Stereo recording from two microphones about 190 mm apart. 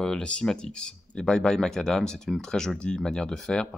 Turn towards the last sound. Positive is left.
turn(degrees=5)  # may be behind; listen again after turning